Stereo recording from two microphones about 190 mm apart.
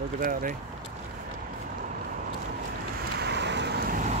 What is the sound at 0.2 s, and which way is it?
Speech, 45° right (ahead or behind).